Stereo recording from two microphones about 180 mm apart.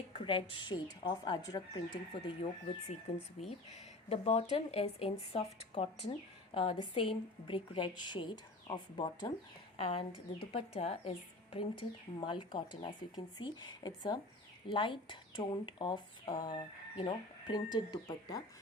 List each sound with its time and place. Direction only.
0.1 s speech: 30° left (ahead or behind)
4.1 s a woman's voice: 35° left (ahead or behind)